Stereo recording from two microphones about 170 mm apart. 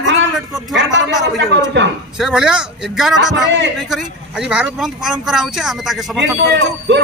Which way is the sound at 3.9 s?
5° right (ahead or behind).